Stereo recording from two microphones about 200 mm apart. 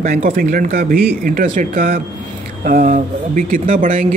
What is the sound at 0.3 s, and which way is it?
Speech, 45° right (ahead or behind).